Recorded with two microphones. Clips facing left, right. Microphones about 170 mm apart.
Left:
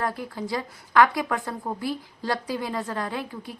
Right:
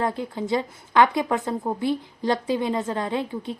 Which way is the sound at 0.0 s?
20° right (ahead or behind).